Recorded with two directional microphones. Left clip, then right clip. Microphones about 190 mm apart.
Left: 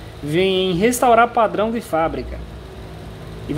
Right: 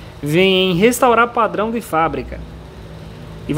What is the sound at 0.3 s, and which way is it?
A man's voice, 20° right (ahead or behind).